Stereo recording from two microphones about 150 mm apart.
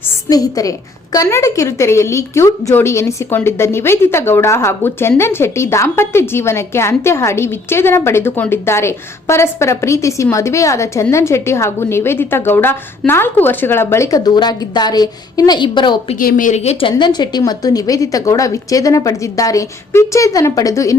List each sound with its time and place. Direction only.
0.3 s a woman's voice: 25° left (ahead or behind)
16.1 s a woman's voice: 65° left (ahead or behind)
16.9 s a woman's voice: 30° left (ahead or behind)